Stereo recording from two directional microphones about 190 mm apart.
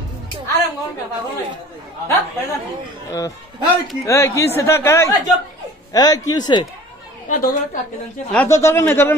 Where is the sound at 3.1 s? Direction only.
15° left (ahead or behind).